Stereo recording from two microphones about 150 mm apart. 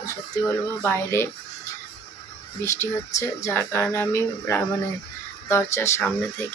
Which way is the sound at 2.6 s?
20° left (ahead or behind).